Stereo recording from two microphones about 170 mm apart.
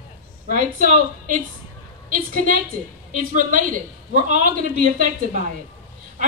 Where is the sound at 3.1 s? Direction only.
50° right (ahead or behind).